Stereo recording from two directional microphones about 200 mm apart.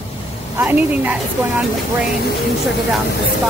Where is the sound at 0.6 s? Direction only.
10° right (ahead or behind).